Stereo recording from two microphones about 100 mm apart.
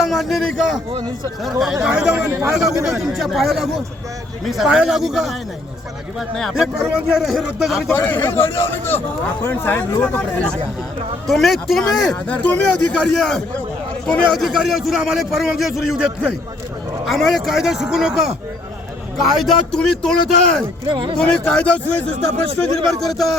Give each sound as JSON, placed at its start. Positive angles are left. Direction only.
{"t": 0.0, "sound": "a man's voice", "side_deg": 0}
{"t": 2.3, "sound": "speech", "side_deg": -30}
{"t": 3.0, "sound": "speech", "side_deg": -5}
{"t": 7.9, "sound": "speech", "side_deg": 25}
{"t": 11.3, "sound": "a man's voice", "side_deg": 0}
{"t": 17.1, "sound": "speech", "side_deg": 0}
{"t": 20.8, "sound": "speech", "side_deg": -55}
{"t": 21.2, "sound": "a man's voice", "side_deg": 10}
{"t": 22.9, "sound": "speech", "side_deg": 0}